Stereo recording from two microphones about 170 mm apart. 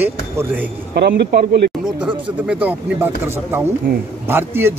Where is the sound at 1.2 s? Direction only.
65° right (ahead or behind).